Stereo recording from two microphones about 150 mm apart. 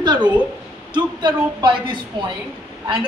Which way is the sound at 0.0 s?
30° right (ahead or behind).